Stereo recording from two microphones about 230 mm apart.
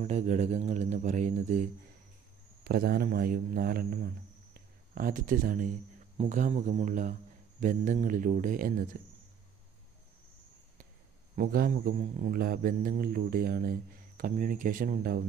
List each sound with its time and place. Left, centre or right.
0.0 s a man's voice: right
11.3 s a man's voice: right